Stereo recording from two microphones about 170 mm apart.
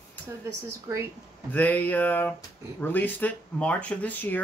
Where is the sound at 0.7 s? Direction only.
15° right (ahead or behind).